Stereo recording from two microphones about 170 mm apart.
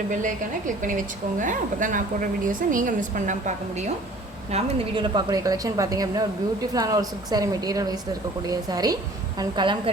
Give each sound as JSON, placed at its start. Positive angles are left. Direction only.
{"t": 0.1, "sound": "a woman's voice", "side_deg": -50}
{"t": 4.5, "sound": "a woman's voice", "side_deg": -35}